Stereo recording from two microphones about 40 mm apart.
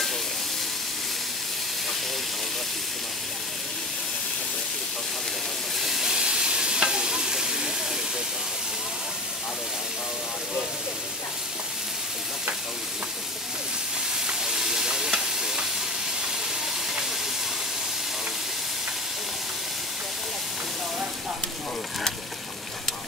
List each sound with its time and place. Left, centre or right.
5.8 s steam: centre
6.2 s stir: centre
14.2 s stir: centre